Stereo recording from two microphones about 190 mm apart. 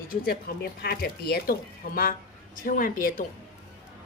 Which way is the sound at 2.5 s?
45° left (ahead or behind).